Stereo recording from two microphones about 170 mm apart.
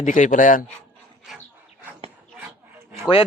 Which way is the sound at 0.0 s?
50° left (ahead or behind).